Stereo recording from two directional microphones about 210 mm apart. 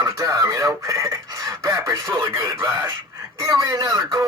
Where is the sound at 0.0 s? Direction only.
15° right (ahead or behind).